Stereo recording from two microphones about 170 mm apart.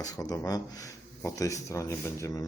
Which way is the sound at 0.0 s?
20° left (ahead or behind).